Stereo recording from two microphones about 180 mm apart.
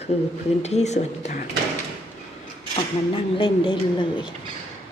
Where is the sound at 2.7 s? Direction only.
30° left (ahead or behind).